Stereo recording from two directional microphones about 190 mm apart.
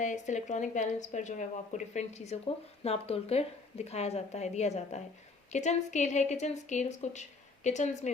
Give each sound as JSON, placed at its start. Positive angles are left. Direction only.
{"t": 0.0, "sound": "speech", "side_deg": 40}